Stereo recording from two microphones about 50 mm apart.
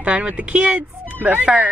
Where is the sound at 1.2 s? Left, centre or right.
Right.